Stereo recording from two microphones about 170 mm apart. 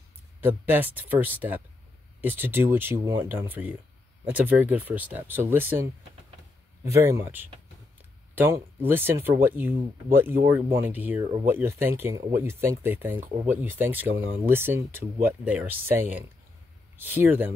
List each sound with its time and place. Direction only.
0.4 s speech: 10° right (ahead or behind)